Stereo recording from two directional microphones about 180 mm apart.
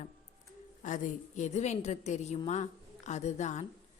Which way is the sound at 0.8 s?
45° left (ahead or behind).